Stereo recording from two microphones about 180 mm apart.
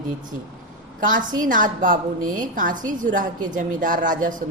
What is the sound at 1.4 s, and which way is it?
A woman's voice, 45° right (ahead or behind).